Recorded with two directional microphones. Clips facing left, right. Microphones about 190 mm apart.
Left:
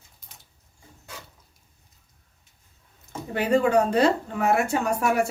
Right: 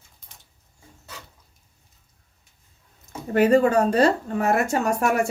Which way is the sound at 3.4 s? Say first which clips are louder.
Right 3 dB; 45° right (ahead or behind).